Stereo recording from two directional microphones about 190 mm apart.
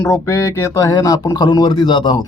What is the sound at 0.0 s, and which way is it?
Speech, 15° left (ahead or behind).